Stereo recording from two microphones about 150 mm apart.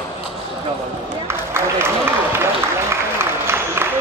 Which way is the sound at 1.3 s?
15° right (ahead or behind).